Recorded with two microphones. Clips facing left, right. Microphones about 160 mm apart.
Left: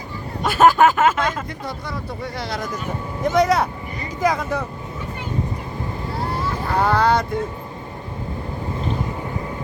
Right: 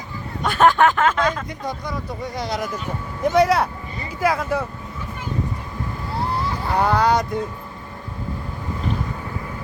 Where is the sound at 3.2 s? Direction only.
5° right (ahead or behind).